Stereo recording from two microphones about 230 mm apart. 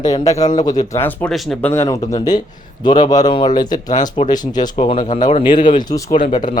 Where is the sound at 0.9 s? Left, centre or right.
Centre.